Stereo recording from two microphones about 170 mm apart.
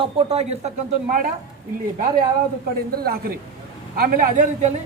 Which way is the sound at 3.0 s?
65° right (ahead or behind).